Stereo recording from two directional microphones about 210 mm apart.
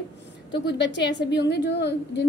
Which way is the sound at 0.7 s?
55° left (ahead or behind).